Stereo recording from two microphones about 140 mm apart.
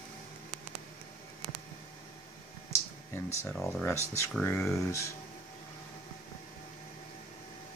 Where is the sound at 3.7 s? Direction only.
15° left (ahead or behind).